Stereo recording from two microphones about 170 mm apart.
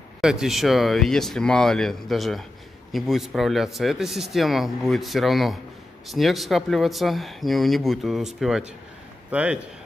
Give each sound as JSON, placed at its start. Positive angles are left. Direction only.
{"t": 0.2, "sound": "speech", "side_deg": -5}